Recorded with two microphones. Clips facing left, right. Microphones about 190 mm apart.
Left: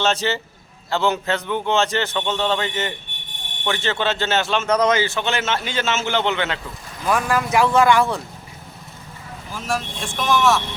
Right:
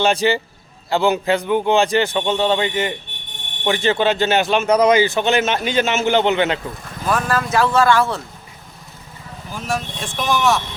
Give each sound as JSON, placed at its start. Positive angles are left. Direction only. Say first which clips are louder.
{"t": 0.0, "sound": "a man's voice", "louder": "right 4 dB", "side_deg": -15}
{"t": 7.1, "sound": "speech", "louder": "even", "side_deg": 15}
{"t": 9.6, "sound": "speech", "louder": "right 1 dB", "side_deg": 0}